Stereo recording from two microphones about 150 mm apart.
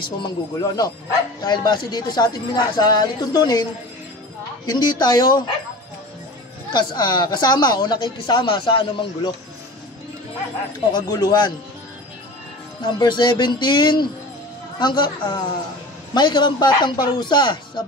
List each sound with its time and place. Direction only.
0.2 s speech: 25° left (ahead or behind)
4.6 s speech: 30° left (ahead or behind)
6.7 s speech: 30° left (ahead or behind)
10.9 s speech: 25° left (ahead or behind)
12.8 s speech: 30° left (ahead or behind)